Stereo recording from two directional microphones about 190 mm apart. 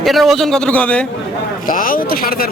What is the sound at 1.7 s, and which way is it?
Speech, 45° left (ahead or behind).